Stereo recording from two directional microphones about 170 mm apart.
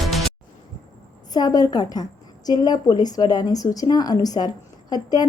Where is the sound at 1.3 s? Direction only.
20° left (ahead or behind).